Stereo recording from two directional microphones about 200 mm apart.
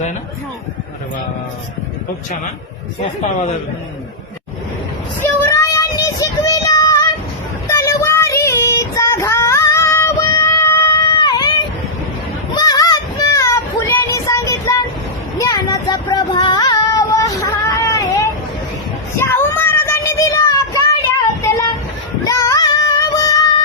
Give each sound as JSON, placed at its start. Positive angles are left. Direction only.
{"t": 5.2, "sound": "child singing", "side_deg": 15}
{"t": 12.5, "sound": "child singing", "side_deg": 20}
{"t": 15.4, "sound": "a sound", "side_deg": 20}
{"t": 19.2, "sound": "child singing", "side_deg": 10}